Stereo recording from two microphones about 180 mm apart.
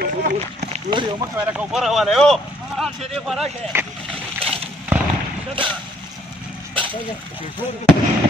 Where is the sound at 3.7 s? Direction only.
15° right (ahead or behind).